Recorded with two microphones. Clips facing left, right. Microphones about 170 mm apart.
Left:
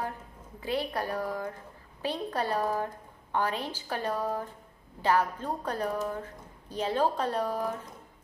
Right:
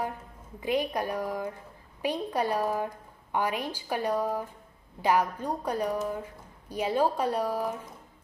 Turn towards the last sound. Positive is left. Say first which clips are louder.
# right 2 dB
turn(degrees=-10)  # may be behind; listen again after turning